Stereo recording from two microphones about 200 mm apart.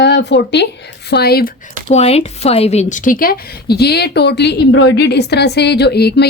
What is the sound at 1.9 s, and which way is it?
A woman's voice, 30° left (ahead or behind).